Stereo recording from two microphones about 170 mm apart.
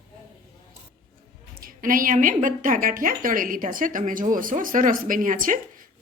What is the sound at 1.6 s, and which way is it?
A woman's voice, 55° right (ahead or behind).